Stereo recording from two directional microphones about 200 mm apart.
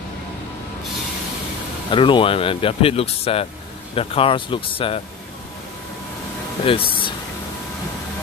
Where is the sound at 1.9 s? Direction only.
25° left (ahead or behind).